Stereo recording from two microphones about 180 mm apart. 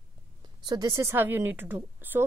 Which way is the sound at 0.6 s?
20° right (ahead or behind).